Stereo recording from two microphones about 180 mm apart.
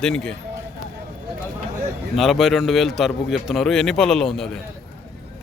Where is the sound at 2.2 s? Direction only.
Centre (ahead or behind).